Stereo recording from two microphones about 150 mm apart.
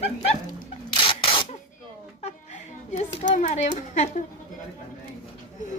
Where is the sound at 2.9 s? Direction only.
50° left (ahead or behind).